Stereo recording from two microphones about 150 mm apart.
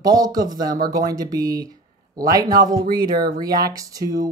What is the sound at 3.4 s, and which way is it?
Speech, 25° right (ahead or behind).